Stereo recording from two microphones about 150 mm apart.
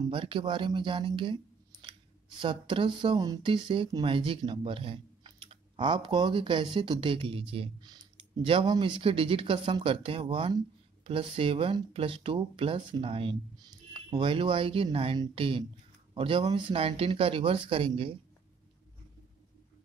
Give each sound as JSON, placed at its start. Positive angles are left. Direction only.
{"t": 0.1, "sound": "speech", "side_deg": -35}